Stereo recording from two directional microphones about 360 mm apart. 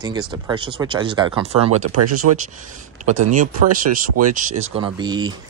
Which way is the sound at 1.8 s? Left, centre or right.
Right.